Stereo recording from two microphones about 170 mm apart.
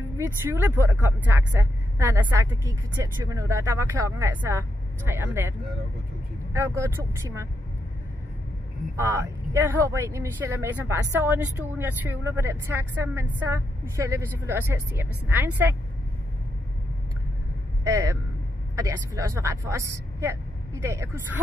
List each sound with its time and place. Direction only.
0.5 s speech: 10° right (ahead or behind)
6.5 s speech: 15° right (ahead or behind)
8.9 s speech: 15° right (ahead or behind)
17.8 s speech: 20° right (ahead or behind)